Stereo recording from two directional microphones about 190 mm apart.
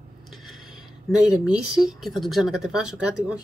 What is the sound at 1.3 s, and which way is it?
Speech, centre (ahead or behind).